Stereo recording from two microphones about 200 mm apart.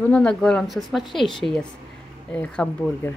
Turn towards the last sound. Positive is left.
turn(degrees=5)  # may be behind; listen again after turning